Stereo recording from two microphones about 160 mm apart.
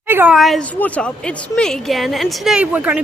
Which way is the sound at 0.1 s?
15° right (ahead or behind).